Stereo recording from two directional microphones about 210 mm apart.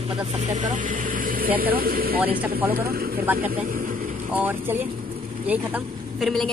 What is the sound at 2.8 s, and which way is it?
Speech, 45° right (ahead or behind).